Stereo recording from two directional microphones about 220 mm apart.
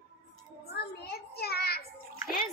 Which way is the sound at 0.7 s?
45° left (ahead or behind).